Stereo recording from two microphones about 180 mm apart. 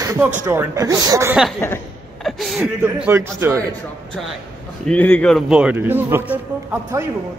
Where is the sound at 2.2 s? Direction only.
Centre (ahead or behind); by 3.6 s 15° right (ahead or behind).